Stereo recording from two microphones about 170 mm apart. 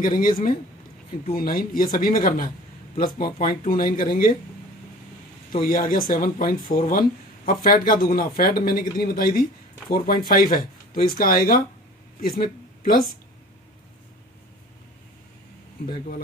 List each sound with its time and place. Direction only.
0.0 s speech: 55° left (ahead or behind)
5.5 s speech: 60° left (ahead or behind)